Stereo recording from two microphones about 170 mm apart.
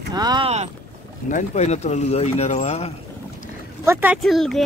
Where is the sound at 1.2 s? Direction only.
45° left (ahead or behind).